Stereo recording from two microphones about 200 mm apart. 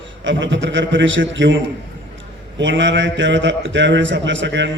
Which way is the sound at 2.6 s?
65° right (ahead or behind).